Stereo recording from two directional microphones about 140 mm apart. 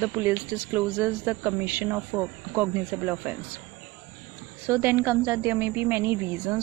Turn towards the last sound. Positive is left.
turn(degrees=-10)  # may be behind; listen again after turning